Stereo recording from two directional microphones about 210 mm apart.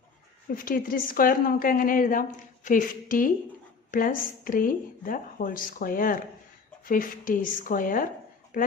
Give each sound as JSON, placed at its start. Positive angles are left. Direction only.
{"t": 0.5, "sound": "a woman's voice", "side_deg": 40}